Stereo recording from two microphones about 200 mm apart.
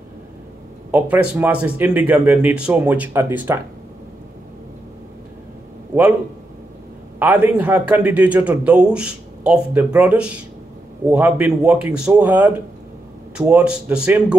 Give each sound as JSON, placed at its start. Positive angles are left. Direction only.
{"t": 0.9, "sound": "a man's voice", "side_deg": -5}
{"t": 7.2, "sound": "a man's voice", "side_deg": -10}